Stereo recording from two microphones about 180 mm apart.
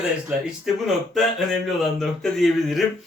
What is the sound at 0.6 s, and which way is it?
Speech, centre (ahead or behind).